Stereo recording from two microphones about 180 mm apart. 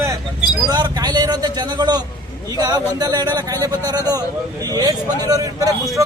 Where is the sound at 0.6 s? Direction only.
20° right (ahead or behind).